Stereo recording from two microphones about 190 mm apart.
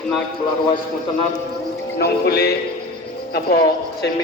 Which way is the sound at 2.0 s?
60° left (ahead or behind).